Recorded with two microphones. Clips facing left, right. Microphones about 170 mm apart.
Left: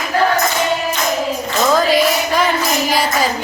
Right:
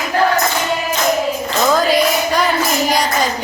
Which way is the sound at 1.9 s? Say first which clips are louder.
Even; centre (ahead or behind).